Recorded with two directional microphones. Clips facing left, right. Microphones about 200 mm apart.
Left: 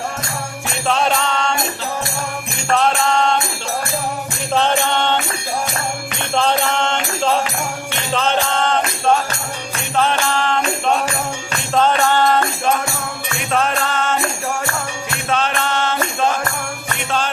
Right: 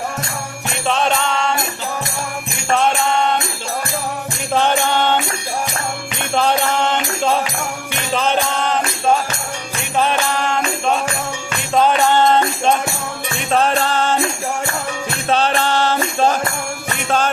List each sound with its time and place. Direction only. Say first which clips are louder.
0.9 s mantra: even; centre (ahead or behind)
2.7 s mantra: even; centre (ahead or behind)
4.5 s mantra: right 1 dB; 10° right (ahead or behind)
6.3 s music: right 1 dB; 10° right (ahead or behind)
11.7 s music: right 1 dB; 10° right (ahead or behind)
13.5 s music: right 3 dB; 35° right (ahead or behind)
15.3 s music: right 3 dB; 35° right (ahead or behind)